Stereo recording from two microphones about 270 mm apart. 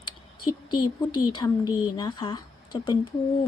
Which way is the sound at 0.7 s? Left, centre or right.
Centre.